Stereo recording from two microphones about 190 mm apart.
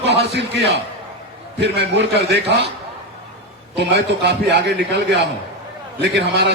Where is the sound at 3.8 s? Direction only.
60° right (ahead or behind).